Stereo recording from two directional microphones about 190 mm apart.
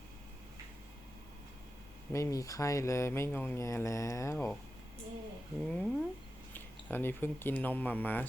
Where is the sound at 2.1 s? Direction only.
15° left (ahead or behind).